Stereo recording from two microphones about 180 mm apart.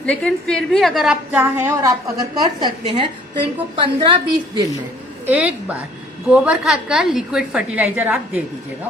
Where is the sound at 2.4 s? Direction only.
25° right (ahead or behind).